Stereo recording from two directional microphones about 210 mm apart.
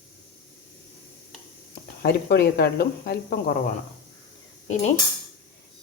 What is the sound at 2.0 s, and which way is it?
Speech, 50° left (ahead or behind).